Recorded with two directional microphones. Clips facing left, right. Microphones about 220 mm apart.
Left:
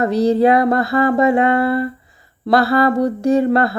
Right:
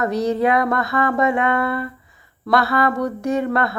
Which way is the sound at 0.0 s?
30° left (ahead or behind).